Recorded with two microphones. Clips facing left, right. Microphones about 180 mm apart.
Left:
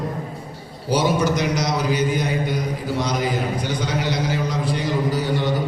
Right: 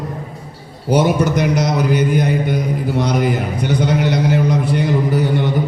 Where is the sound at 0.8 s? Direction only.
55° right (ahead or behind).